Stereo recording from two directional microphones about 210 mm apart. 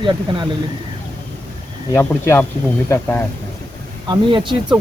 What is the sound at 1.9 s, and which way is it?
Speech, 10° left (ahead or behind).